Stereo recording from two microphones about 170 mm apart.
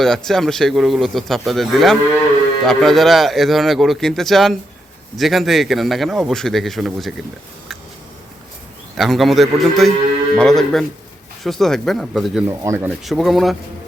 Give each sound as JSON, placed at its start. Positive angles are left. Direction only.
{"t": 0.0, "sound": "speech", "side_deg": 0}
{"t": 9.0, "sound": "speech", "side_deg": 0}
{"t": 12.5, "sound": "speech", "side_deg": -15}
{"t": 13.1, "sound": "speech", "side_deg": 0}